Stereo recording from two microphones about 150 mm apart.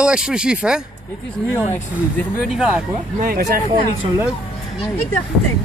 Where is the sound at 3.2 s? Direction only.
85° right.